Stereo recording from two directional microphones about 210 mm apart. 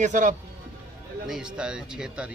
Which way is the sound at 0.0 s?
35° right (ahead or behind).